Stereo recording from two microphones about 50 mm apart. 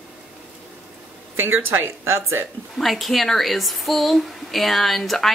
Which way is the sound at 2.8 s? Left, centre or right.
Centre.